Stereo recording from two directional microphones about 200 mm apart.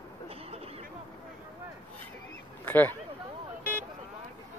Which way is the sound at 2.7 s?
10° left (ahead or behind).